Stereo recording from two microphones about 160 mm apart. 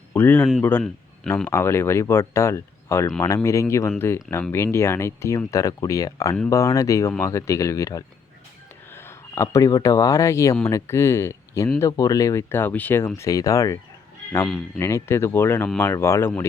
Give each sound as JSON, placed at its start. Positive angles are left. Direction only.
{"t": 0.1, "sound": "a man's voice", "side_deg": 15}
{"t": 14.8, "sound": "speech", "side_deg": 15}